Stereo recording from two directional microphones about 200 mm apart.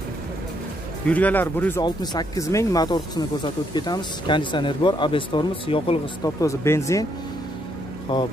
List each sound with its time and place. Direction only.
1.0 s speech: 5° left (ahead or behind)
8.1 s speech: 20° left (ahead or behind)